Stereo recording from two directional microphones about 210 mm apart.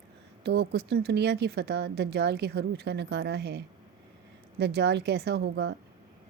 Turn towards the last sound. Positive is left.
turn(degrees=-55)  # may be behind; listen again after turning